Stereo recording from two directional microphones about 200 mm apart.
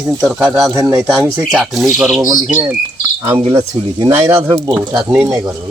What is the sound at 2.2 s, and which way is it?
Speech, 20° right (ahead or behind).